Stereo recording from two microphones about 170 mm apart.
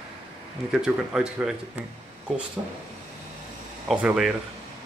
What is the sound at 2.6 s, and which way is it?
Speech, 20° right (ahead or behind).